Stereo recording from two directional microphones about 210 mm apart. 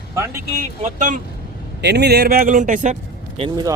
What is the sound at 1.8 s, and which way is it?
Speech, 50° right (ahead or behind).